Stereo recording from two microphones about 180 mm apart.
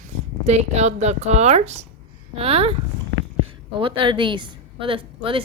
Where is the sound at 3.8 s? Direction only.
30° right (ahead or behind).